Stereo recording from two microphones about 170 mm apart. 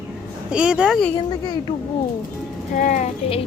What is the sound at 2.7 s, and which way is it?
Speech, 50° left (ahead or behind).